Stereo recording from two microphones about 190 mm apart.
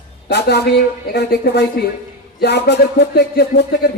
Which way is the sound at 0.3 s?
60° left (ahead or behind).